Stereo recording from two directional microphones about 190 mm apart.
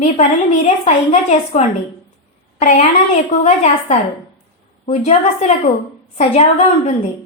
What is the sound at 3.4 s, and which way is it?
A woman's voice, 35° left (ahead or behind).